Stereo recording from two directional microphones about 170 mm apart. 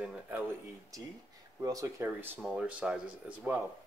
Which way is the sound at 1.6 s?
20° right (ahead or behind).